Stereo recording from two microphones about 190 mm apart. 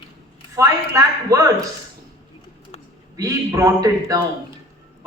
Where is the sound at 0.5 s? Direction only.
15° right (ahead or behind).